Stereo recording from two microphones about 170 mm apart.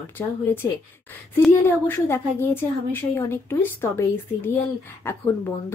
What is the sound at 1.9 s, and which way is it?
A woman's voice, 15° left (ahead or behind).